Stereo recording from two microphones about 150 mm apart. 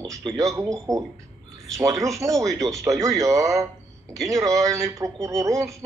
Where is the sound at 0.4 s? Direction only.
20° right (ahead or behind).